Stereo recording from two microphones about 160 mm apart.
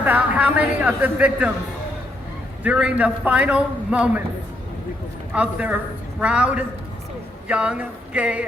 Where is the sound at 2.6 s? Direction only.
5° right (ahead or behind).